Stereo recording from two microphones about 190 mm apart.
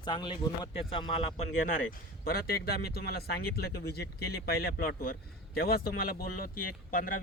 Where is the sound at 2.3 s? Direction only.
55° left (ahead or behind).